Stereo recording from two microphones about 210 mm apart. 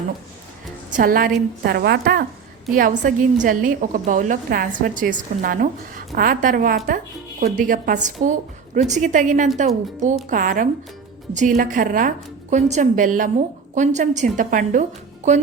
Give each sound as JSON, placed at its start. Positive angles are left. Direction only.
{"t": 0.9, "sound": "a woman's voice", "side_deg": -45}